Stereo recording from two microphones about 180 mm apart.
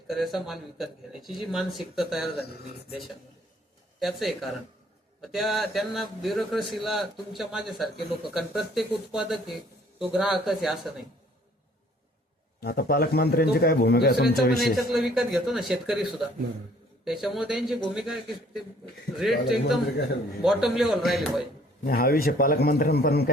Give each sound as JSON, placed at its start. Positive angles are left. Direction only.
{"t": 0.1, "sound": "a man's voice", "side_deg": 0}
{"t": 4.0, "sound": "a man's voice", "side_deg": 0}
{"t": 12.5, "sound": "a man's voice", "side_deg": 55}
{"t": 14.6, "sound": "a man's voice", "side_deg": 0}
{"t": 21.8, "sound": "a man's voice", "side_deg": 55}